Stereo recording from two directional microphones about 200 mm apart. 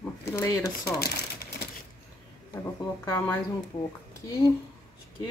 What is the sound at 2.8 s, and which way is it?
Speech, 10° left (ahead or behind).